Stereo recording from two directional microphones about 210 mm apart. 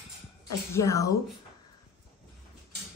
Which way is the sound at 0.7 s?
15° left (ahead or behind).